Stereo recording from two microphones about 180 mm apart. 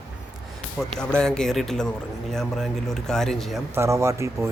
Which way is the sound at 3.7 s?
15° right (ahead or behind).